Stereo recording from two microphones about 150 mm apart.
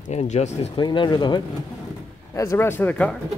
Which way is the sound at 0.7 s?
30° left (ahead or behind).